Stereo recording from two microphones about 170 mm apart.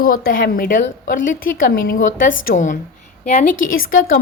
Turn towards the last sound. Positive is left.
turn(degrees=55)  # may be behind; listen again after turning